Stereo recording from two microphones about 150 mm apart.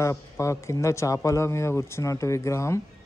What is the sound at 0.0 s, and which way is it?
A man's voice, 20° left (ahead or behind).